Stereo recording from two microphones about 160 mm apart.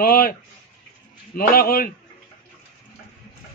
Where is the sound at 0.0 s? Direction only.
70° left (ahead or behind).